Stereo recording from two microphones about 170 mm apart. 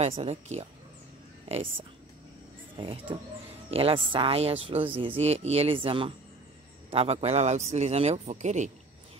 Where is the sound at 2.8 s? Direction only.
30° right (ahead or behind).